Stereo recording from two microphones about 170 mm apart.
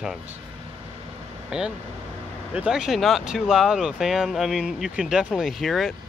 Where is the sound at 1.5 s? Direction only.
5° right (ahead or behind).